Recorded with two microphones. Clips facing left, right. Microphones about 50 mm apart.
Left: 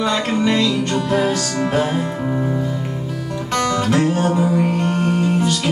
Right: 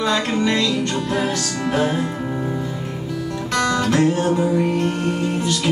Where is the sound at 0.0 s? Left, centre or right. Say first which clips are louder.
Left 1 dB; centre.